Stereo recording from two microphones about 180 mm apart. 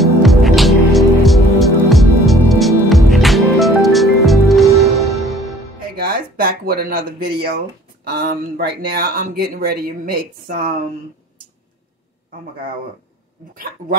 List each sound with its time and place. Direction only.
0.0 s music: centre (ahead or behind)
5.9 s speech: 55° right (ahead or behind)